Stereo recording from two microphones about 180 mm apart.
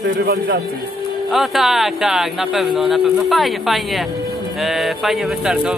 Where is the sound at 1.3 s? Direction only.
Centre (ahead or behind).